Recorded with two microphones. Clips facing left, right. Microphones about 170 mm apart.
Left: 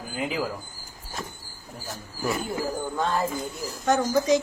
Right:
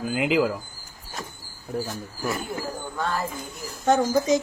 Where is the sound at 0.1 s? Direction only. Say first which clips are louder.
Right 7 dB; 85° right.